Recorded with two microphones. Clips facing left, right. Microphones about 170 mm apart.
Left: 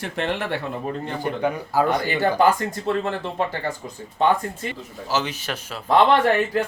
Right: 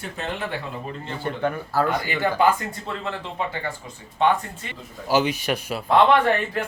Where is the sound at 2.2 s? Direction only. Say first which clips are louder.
Left 1 dB; 40° left (ahead or behind).